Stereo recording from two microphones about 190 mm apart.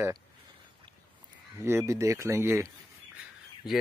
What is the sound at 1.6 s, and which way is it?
Speech, 15° right (ahead or behind).